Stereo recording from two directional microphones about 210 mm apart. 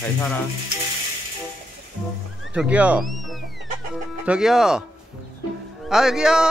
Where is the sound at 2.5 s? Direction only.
5° right (ahead or behind).